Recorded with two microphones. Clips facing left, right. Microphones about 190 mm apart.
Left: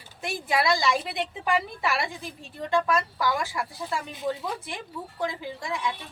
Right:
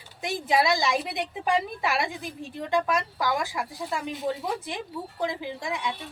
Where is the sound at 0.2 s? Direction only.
20° right (ahead or behind).